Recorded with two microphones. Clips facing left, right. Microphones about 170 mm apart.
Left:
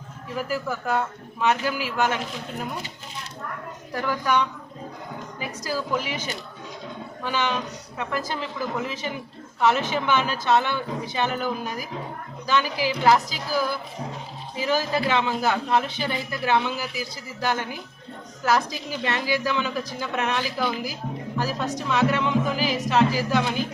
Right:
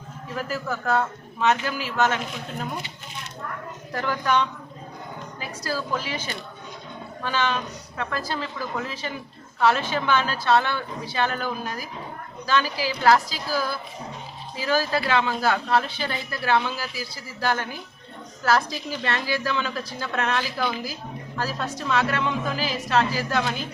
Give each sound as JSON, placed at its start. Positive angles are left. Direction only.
{"t": 0.3, "sound": "a man's voice", "side_deg": 10}
{"t": 3.9, "sound": "a man's voice", "side_deg": 10}